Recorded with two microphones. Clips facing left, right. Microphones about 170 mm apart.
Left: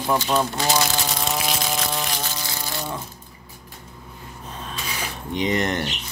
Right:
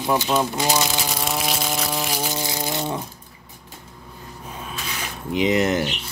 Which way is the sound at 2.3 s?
20° right (ahead or behind).